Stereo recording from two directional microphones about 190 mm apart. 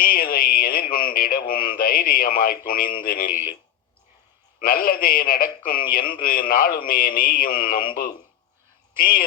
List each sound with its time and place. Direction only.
0.0 s speech: 50° left (ahead or behind)
4.6 s speech: 50° left (ahead or behind)
9.0 s speech: 50° left (ahead or behind)